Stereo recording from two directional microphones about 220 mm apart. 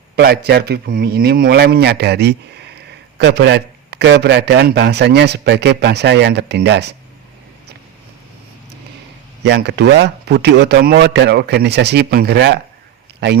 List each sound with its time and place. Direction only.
0.2 s a man's voice: 45° right (ahead or behind)
9.4 s a man's voice: 50° right (ahead or behind)